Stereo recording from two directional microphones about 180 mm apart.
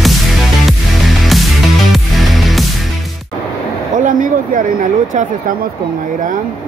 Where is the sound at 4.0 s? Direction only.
50° right (ahead or behind).